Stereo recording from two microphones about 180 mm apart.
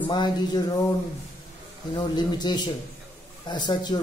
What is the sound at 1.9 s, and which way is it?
A man's voice, 25° left (ahead or behind).